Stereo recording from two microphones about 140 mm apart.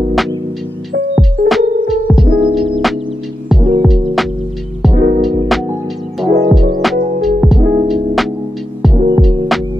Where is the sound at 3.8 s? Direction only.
Centre (ahead or behind).